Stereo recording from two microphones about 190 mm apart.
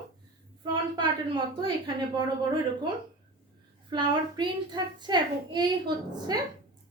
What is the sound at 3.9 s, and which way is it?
A child's voice, 25° right (ahead or behind).